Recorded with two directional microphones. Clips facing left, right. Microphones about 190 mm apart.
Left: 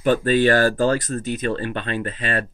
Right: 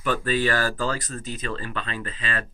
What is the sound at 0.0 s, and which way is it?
Speech, 25° left (ahead or behind).